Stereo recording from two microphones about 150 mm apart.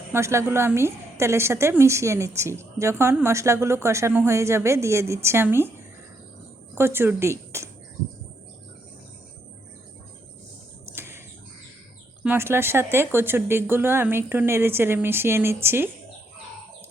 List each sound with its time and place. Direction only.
0.1 s a woman's voice: 20° right (ahead or behind)
6.7 s speech: 15° right (ahead or behind)
10.9 s bird: 15° right (ahead or behind)
12.2 s speech: 15° right (ahead or behind)